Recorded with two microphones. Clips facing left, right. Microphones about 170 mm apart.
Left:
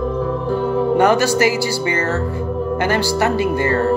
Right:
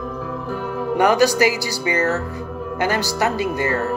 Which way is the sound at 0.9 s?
15° right (ahead or behind).